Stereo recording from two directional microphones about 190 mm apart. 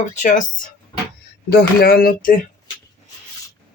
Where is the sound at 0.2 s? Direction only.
40° left (ahead or behind).